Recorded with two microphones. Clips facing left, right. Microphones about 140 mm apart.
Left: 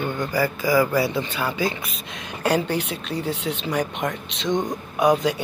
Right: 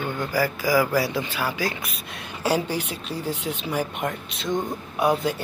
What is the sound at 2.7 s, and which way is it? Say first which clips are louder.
Speech: left 3 dB; 70° left (ahead or behind).